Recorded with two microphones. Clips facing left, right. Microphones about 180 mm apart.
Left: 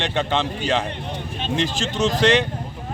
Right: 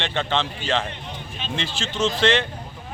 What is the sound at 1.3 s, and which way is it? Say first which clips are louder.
Speech: left 6 dB; 40° left (ahead or behind).